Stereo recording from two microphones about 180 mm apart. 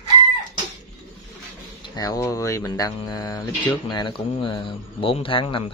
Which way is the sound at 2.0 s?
20° left (ahead or behind).